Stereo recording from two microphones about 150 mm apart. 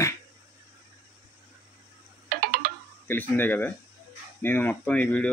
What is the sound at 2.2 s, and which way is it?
Music, 90° right.